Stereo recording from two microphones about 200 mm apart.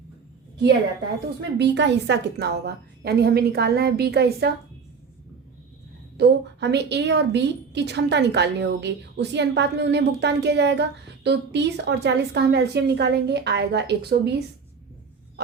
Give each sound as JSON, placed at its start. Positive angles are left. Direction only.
{"t": 1.5, "sound": "a woman's voice", "side_deg": -60}
{"t": 6.1, "sound": "a woman's voice", "side_deg": -55}